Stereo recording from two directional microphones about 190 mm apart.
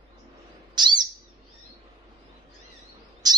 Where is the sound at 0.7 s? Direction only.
20° right (ahead or behind).